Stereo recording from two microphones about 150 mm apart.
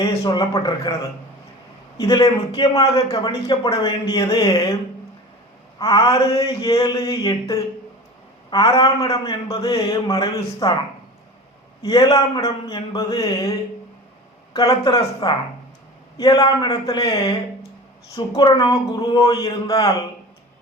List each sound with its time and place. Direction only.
0.0 s a man's voice: 25° left (ahead or behind)
2.0 s a man's voice: 25° left (ahead or behind)
5.8 s a man's voice: 25° left (ahead or behind)
11.8 s a man's voice: 25° left (ahead or behind)
14.8 s a man's voice: 25° left (ahead or behind)
18.3 s a man's voice: 30° left (ahead or behind)